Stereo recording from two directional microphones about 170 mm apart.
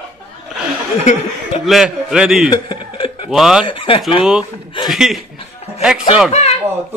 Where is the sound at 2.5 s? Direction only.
30° left (ahead or behind).